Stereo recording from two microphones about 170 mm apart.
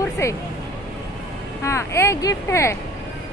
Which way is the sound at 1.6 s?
15° left (ahead or behind).